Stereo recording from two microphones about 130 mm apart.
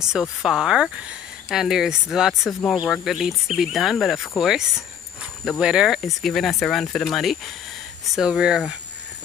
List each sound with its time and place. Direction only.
0.0 s speech: 5° right (ahead or behind)